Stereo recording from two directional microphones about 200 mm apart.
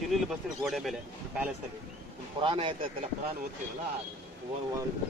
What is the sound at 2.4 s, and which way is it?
Speech, 25° right (ahead or behind).